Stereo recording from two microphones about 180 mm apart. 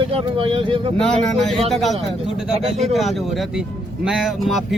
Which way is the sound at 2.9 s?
Centre (ahead or behind).